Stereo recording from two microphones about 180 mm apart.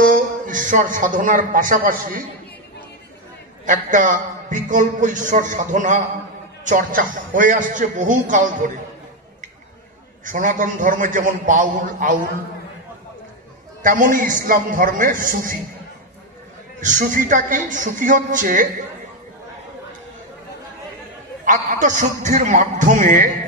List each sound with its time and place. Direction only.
0.0 s a man's voice: 50° right (ahead or behind)
3.6 s a man's voice: 45° right (ahead or behind)
10.2 s a man's voice: 45° right (ahead or behind)
13.8 s a man's voice: 50° right (ahead or behind)
16.8 s a man's voice: 45° right (ahead or behind)
21.5 s a man's voice: 45° right (ahead or behind)